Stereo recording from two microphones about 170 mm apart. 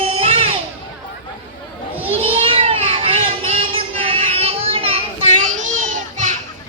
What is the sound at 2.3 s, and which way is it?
Child singing, 35° right (ahead or behind).